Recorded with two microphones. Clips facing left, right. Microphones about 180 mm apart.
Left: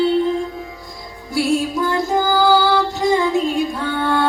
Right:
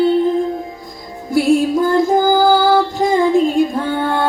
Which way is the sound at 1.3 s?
50° right (ahead or behind).